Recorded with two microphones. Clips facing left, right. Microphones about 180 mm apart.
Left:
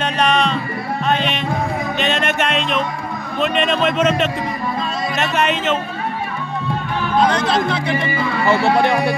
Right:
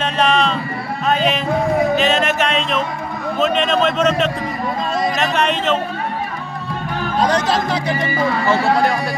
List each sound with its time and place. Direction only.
0.0 s a sound: centre (ahead or behind)
2.0 s music: centre (ahead or behind)
3.3 s a man's voice: centre (ahead or behind)
7.2 s speech: 40° right (ahead or behind)
8.5 s speech: 25° left (ahead or behind)